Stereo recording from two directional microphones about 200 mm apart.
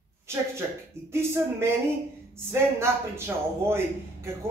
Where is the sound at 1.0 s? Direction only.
15° right (ahead or behind).